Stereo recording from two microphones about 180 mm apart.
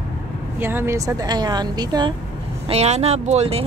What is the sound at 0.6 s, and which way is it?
Speech, 10° right (ahead or behind).